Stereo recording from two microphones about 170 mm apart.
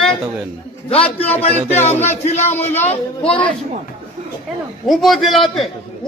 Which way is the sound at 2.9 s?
35° left (ahead or behind).